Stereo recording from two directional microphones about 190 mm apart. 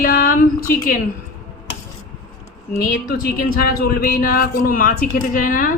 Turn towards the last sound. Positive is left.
turn(degrees=50)  # may be behind; listen again after turning